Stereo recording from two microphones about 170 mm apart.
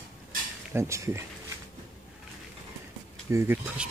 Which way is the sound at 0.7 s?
15° right (ahead or behind).